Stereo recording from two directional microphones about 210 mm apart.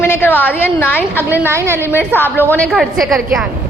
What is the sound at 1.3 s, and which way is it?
Speech, 10° right (ahead or behind).